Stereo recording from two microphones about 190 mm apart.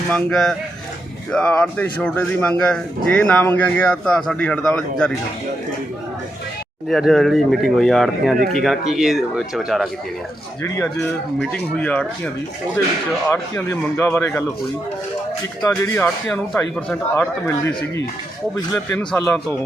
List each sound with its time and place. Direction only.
0.1 s speech: centre (ahead or behind)
6.8 s speech: centre (ahead or behind)
11.8 s speech: 5° left (ahead or behind)
15.7 s speech: 10° left (ahead or behind)